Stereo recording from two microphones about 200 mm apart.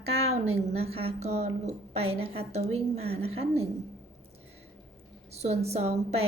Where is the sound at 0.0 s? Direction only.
30° right (ahead or behind).